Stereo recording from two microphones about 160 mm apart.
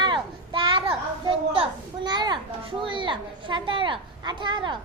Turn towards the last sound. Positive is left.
turn(degrees=-30)  # may be behind; listen again after turning